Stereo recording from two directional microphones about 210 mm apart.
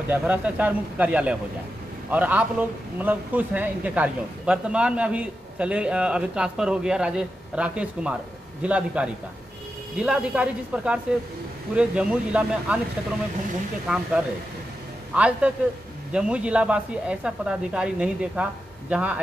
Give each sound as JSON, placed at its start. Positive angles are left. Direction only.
{"t": 0.1, "sound": "a man's voice", "side_deg": -5}
{"t": 13.8, "sound": "a man's voice", "side_deg": -5}